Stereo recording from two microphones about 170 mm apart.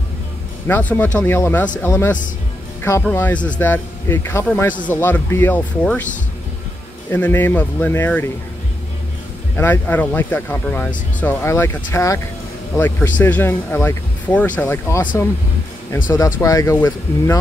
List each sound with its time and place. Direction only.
0.7 s speech: 10° left (ahead or behind)
7.1 s speech: 10° left (ahead or behind)
9.6 s speech: 10° left (ahead or behind)
16.3 s speech: 20° left (ahead or behind)